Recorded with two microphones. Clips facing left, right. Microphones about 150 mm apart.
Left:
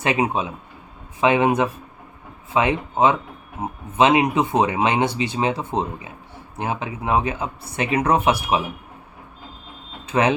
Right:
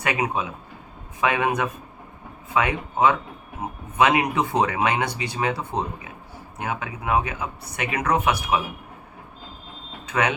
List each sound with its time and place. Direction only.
0.0 s speech: 25° left (ahead or behind)
10.1 s speech: 30° left (ahead or behind)